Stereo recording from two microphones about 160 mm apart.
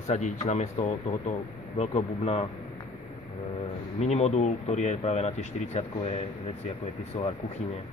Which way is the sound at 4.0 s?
45° left (ahead or behind).